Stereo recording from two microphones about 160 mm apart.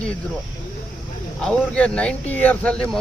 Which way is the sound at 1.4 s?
5° left (ahead or behind).